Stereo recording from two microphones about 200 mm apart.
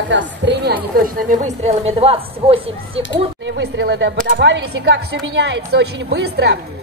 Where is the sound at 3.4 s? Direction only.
60° right (ahead or behind).